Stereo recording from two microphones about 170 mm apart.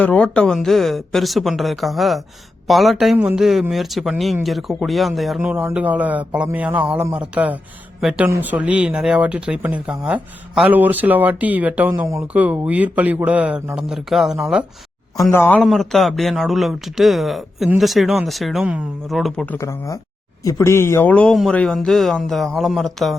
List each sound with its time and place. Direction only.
0.0 s speech: 5° left (ahead or behind)
5.4 s speech: 10° right (ahead or behind)
15.3 s speech: 10° left (ahead or behind)
15.6 s speech: centre (ahead or behind)
19.5 s speech: 20° left (ahead or behind); by 23.1 s centre (ahead or behind)